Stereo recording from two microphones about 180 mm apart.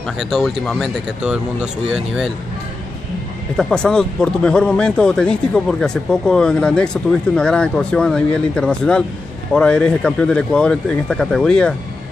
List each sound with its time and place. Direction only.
0.0 s speech: centre (ahead or behind)
3.5 s speech: 5° left (ahead or behind)